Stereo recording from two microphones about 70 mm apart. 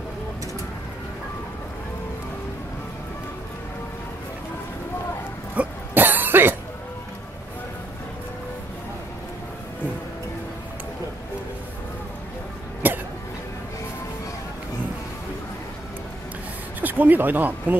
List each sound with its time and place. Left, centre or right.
5.6 s cough: right
12.8 s cough: right
16.8 s speech: right